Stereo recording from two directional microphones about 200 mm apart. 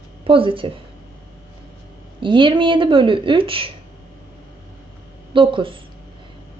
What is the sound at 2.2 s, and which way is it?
Speech, 25° right (ahead or behind).